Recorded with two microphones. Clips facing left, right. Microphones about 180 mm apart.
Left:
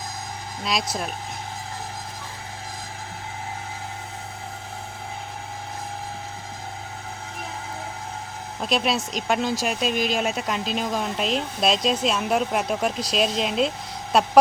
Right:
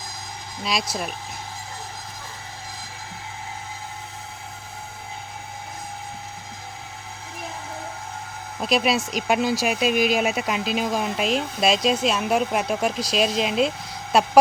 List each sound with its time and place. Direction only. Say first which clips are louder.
0.6 s speech: even; centre (ahead or behind)
8.6 s speech: right 2 dB; 5° right (ahead or behind)